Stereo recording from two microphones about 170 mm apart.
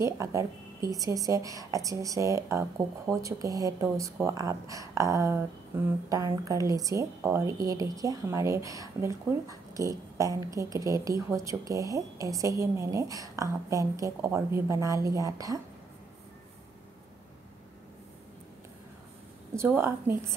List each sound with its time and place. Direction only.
0.0 s a woman's voice: 20° right (ahead or behind)
19.5 s speech: 15° right (ahead or behind)